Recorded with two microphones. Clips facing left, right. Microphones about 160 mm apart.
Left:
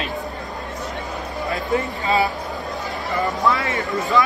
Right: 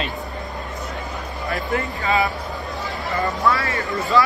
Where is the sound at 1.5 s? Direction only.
20° left (ahead or behind).